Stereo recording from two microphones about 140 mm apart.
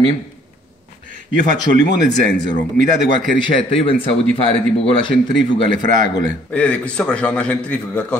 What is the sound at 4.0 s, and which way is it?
Speech, 40° left (ahead or behind).